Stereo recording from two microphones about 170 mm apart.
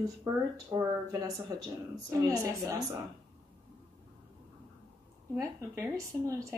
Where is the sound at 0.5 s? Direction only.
20° right (ahead or behind).